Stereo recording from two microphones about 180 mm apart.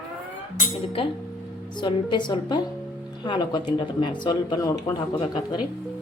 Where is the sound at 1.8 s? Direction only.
25° left (ahead or behind).